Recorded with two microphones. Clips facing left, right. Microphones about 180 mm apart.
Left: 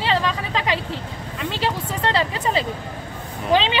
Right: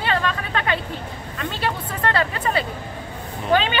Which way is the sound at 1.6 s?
25° left (ahead or behind).